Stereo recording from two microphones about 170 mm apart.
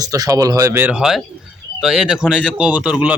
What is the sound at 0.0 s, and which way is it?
Speech, 20° right (ahead or behind).